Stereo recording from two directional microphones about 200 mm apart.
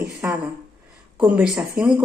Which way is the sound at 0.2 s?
10° right (ahead or behind).